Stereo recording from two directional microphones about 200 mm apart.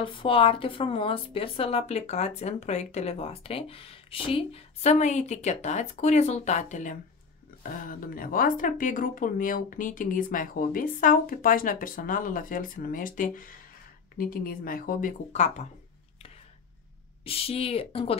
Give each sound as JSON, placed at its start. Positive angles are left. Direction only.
{"t": 0.0, "sound": "speech", "side_deg": 25}
{"t": 17.2, "sound": "speech", "side_deg": 30}